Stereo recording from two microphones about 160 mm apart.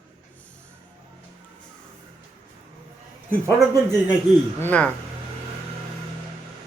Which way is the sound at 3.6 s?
20° right (ahead or behind).